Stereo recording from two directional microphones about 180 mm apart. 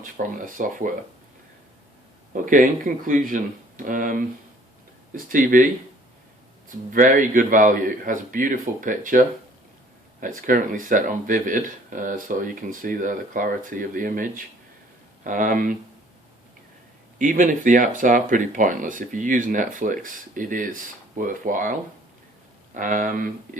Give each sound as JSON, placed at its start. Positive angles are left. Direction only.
{"t": 0.0, "sound": "speech", "side_deg": -50}
{"t": 2.3, "sound": "speech", "side_deg": -45}
{"t": 6.9, "sound": "speech", "side_deg": -45}
{"t": 17.2, "sound": "speech", "side_deg": -45}